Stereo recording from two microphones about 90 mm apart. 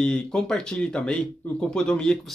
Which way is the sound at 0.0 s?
5° left (ahead or behind).